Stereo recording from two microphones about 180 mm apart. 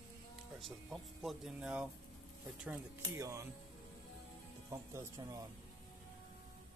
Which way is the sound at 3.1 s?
15° right (ahead or behind).